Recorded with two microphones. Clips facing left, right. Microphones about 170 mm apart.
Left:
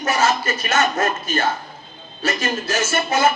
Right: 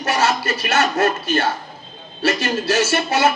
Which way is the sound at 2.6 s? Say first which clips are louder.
Right 4 dB; 35° right (ahead or behind).